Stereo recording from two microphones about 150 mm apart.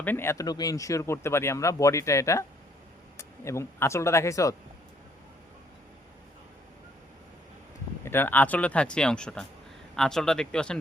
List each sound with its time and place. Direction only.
0.0 s speech: 15° left (ahead or behind)
8.0 s speech: 15° left (ahead or behind)